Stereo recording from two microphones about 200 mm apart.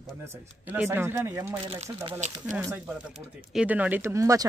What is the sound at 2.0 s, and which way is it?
Speech, 35° right (ahead or behind).